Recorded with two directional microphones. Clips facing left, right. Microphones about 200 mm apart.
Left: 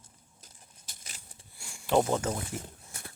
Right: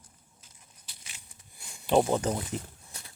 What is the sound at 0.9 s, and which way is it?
Crushing, 40° left (ahead or behind).